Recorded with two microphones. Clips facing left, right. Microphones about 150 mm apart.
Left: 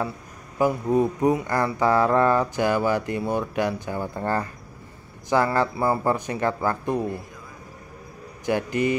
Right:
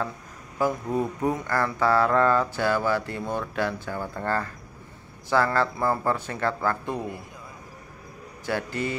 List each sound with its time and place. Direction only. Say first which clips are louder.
0.6 s speech: left 5 dB; 15° left (ahead or behind)
8.5 s speech: left 5 dB; 15° left (ahead or behind)